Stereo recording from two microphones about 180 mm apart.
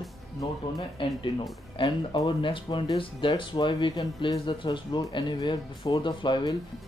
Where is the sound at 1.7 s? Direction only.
25° left (ahead or behind).